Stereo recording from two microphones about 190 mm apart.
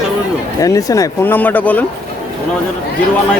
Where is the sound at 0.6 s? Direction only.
20° left (ahead or behind).